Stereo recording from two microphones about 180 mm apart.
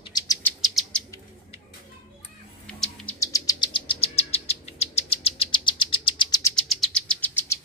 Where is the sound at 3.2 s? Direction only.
20° left (ahead or behind).